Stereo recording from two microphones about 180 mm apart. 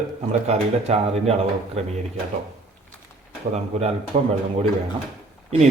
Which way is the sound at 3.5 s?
35° right (ahead or behind).